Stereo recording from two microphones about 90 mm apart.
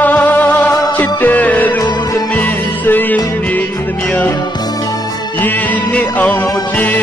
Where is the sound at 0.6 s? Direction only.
40° left (ahead or behind).